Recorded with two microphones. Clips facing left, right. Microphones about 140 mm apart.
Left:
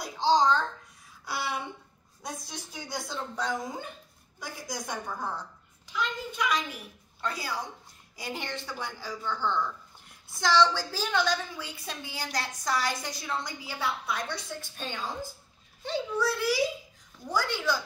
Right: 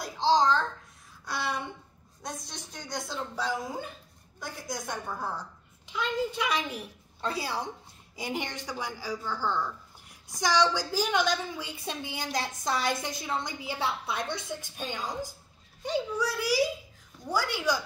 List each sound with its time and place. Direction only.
0.0 s babbling: centre (ahead or behind)
1.2 s a sound: 5° left (ahead or behind)
2.2 s a woman's voice: centre (ahead or behind)
5.9 s a woman's voice: 25° right (ahead or behind)
8.2 s a woman's voice: 15° right (ahead or behind)